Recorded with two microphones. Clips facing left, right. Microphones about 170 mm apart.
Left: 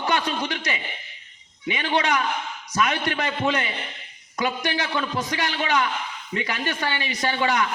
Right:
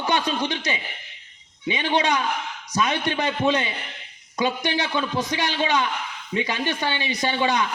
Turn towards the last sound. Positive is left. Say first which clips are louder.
# right 1 dB
turn(degrees=-20)  # may be behind; listen again after turning